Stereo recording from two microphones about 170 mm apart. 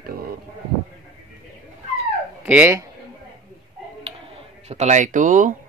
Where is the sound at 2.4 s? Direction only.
10° right (ahead or behind).